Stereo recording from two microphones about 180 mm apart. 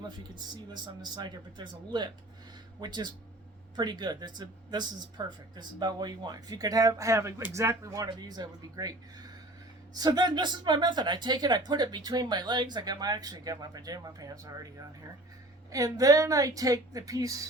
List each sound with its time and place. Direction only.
0.2 s speech: 25° right (ahead or behind)